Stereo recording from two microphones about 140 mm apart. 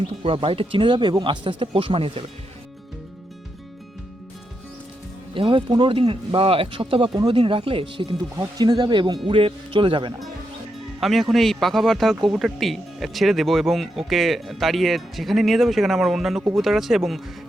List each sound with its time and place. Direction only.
0.2 s speech: 40° right (ahead or behind)
5.3 s speech: 35° right (ahead or behind)
11.0 s speech: centre (ahead or behind)